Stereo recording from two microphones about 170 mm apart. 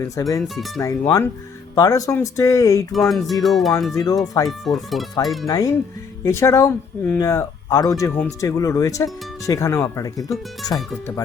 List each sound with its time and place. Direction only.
0.0 s speech: 20° left (ahead or behind)
0.4 s speech: centre (ahead or behind)
0.8 s speech: 20° left (ahead or behind)
2.9 s speech: centre (ahead or behind)
3.9 s speech: 20° left (ahead or behind)
4.4 s speech: centre (ahead or behind)
5.5 s speech: 20° left (ahead or behind)